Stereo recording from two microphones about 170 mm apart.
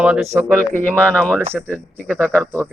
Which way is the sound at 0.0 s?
5° right (ahead or behind).